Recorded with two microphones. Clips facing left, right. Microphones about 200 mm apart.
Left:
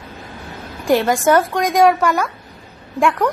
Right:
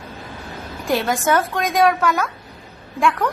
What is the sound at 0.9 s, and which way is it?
Speech, centre (ahead or behind).